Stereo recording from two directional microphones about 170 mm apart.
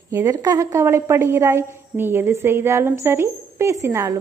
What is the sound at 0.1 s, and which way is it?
A woman's voice, 20° right (ahead or behind).